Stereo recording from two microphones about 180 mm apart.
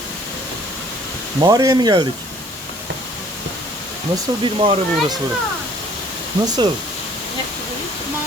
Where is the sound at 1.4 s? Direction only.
20° right (ahead or behind).